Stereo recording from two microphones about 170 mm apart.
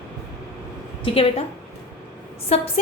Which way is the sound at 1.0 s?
35° left (ahead or behind).